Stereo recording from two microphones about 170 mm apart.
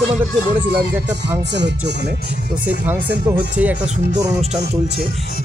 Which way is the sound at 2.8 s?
10° right (ahead or behind).